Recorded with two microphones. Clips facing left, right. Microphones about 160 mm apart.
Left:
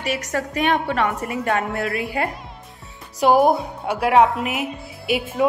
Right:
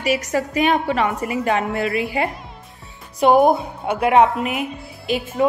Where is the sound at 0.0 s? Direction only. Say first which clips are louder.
Right 4 dB; 5° right (ahead or behind).